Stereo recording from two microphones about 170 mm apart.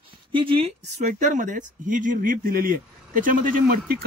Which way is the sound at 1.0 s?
50° right (ahead or behind).